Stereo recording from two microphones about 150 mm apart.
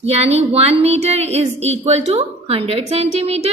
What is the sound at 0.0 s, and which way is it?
A woman's voice, 45° right (ahead or behind).